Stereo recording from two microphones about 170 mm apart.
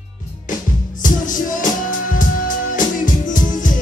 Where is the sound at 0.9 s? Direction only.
50° left (ahead or behind).